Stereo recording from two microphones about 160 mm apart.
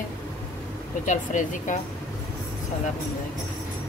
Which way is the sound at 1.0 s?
55° left (ahead or behind).